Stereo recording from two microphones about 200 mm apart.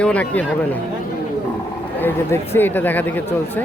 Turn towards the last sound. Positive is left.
turn(degrees=10)  # may be behind; listen again after turning